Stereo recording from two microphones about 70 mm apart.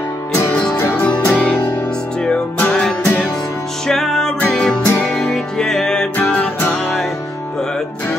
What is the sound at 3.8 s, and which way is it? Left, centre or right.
Music, centre.